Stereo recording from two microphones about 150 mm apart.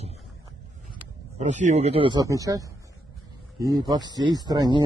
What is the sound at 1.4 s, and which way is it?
Speech, 50° right (ahead or behind).